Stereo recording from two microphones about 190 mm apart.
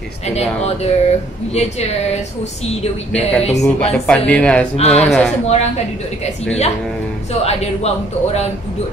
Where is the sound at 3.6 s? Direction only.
5° left (ahead or behind).